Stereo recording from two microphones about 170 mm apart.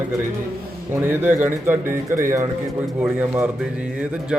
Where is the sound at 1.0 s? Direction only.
10° right (ahead or behind).